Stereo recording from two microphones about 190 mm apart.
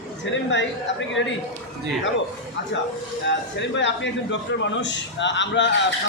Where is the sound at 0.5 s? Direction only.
70° left (ahead or behind).